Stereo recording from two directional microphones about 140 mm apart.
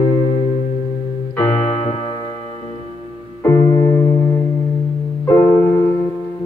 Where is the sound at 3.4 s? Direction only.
20° left (ahead or behind).